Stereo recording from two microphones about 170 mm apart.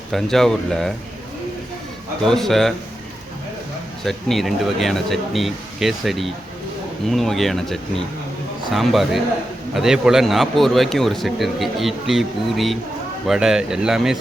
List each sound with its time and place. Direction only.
0.1 s speech: centre (ahead or behind)
2.2 s speech: centre (ahead or behind)
4.0 s speech: centre (ahead or behind)